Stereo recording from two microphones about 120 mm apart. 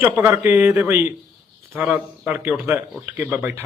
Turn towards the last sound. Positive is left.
turn(degrees=-20)  # may be behind; listen again after turning